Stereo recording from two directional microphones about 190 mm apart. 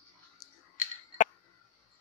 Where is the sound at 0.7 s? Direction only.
40° left (ahead or behind).